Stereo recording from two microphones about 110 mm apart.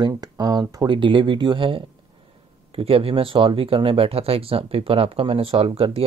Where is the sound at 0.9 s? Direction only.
45° right (ahead or behind).